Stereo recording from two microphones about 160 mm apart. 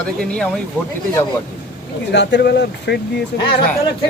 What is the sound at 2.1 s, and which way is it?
Speech, 90° left.